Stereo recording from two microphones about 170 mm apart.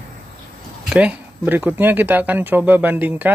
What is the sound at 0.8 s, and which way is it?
Speech, 5° right (ahead or behind).